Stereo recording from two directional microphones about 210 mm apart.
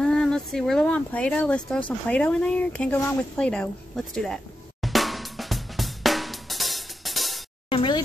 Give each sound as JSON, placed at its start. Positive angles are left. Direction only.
{"t": 0.0, "sound": "speech", "side_deg": 5}
{"t": 4.8, "sound": "hi-hat", "side_deg": 0}
{"t": 7.7, "sound": "speech", "side_deg": 20}